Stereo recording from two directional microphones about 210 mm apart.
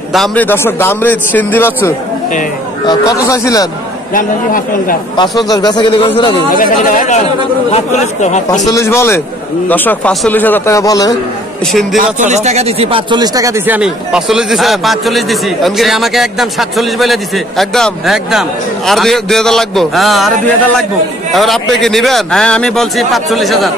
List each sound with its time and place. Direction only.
0.1 s a man's voice: 5° left (ahead or behind)
4.1 s a man's voice: 40° left (ahead or behind)
5.1 s a man's voice: 20° left (ahead or behind)
6.5 s a man's voice: 40° left (ahead or behind)
8.7 s a man's voice: 10° left (ahead or behind)
11.6 s speech: centre (ahead or behind)
12.0 s a man's voice: 35° right (ahead or behind); by 23.7 s centre (ahead or behind)